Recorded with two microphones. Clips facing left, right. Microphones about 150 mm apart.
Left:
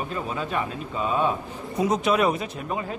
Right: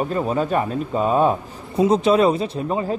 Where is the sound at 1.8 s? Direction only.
30° right (ahead or behind).